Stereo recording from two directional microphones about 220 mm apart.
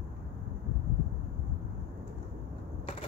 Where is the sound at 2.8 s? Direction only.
25° left (ahead or behind).